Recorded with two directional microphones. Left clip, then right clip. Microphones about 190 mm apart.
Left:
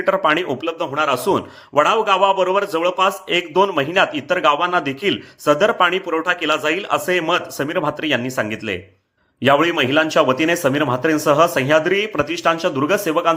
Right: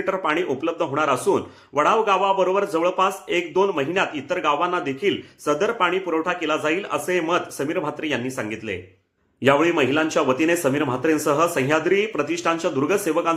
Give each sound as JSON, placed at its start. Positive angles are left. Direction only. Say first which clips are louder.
{"t": 0.0, "sound": "a man's voice", "louder": "left 6 dB", "side_deg": 30}